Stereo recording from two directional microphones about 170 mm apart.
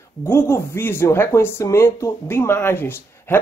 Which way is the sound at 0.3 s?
15° left (ahead or behind).